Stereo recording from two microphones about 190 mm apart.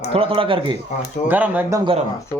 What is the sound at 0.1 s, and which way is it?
Speech, 30° right (ahead or behind).